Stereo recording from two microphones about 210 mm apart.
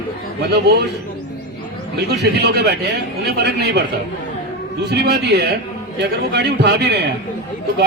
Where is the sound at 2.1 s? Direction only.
55° right (ahead or behind).